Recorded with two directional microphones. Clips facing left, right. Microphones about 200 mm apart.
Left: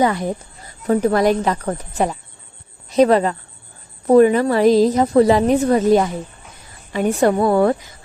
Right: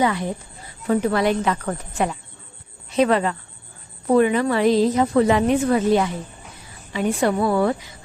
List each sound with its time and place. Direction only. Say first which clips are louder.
0.0 s a woman's voice: left 3 dB; 40° left (ahead or behind)